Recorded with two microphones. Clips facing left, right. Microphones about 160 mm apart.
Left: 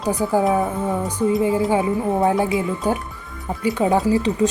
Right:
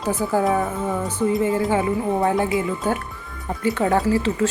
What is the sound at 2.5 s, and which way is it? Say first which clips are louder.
A woman's voice: left 1 dB; 20° left (ahead or behind).